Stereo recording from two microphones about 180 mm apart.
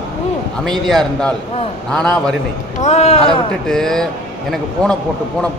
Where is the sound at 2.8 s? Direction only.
35° left (ahead or behind).